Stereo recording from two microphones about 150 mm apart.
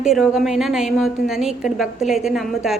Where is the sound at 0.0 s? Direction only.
5° right (ahead or behind).